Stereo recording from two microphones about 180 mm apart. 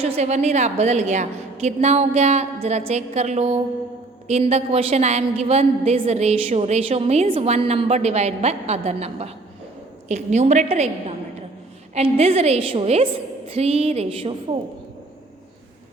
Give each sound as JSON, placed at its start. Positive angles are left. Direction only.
{"t": 0.0, "sound": "a woman's voice", "side_deg": -35}